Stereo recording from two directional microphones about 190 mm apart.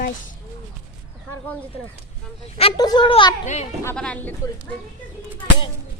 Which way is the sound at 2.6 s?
25° left (ahead or behind).